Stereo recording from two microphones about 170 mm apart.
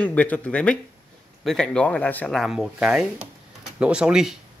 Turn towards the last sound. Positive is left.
turn(degrees=-5)  # may be behind; listen again after turning